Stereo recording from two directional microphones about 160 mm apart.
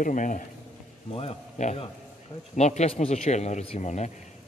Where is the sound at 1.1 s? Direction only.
35° left (ahead or behind).